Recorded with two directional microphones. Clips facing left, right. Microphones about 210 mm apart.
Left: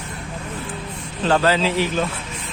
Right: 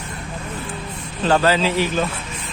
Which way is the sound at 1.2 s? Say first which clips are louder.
Right 1 dB; 5° right (ahead or behind).